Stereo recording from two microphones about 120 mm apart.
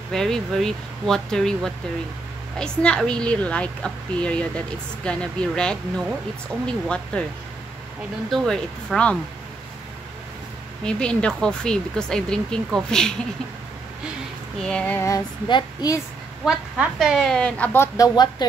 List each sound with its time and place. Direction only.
0.1 s a woman's voice: 5° left (ahead or behind)
8.3 s a woman's voice: 5° left (ahead or behind)
10.8 s a woman's voice: 5° left (ahead or behind)
14.6 s a woman's voice: 10° left (ahead or behind)
15.0 s speech: 30° left (ahead or behind)
15.4 s a woman's voice: 40° left (ahead or behind)
16.4 s speech: 5° right (ahead or behind)
17.7 s speech: 30° left (ahead or behind)